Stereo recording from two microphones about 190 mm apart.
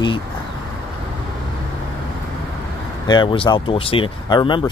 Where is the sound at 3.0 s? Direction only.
25° left (ahead or behind).